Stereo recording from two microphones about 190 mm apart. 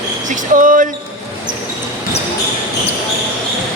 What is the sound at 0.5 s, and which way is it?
Basketball bounce, 45° right (ahead or behind).